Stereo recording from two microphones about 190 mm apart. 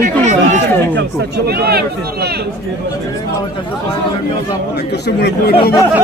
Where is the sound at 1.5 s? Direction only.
55° right (ahead or behind).